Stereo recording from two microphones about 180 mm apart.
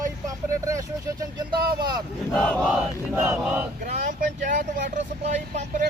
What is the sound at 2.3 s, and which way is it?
Battle cry, 5° left (ahead or behind).